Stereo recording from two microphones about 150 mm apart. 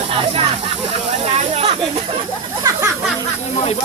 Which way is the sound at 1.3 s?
40° right (ahead or behind).